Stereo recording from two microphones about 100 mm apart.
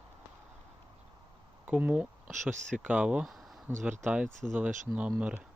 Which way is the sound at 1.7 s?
15° right (ahead or behind).